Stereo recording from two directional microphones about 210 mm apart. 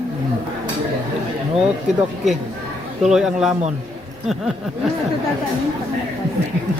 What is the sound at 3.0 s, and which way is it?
Speech, centre (ahead or behind).